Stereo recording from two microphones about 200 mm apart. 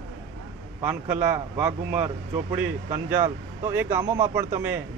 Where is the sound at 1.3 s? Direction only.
5° right (ahead or behind).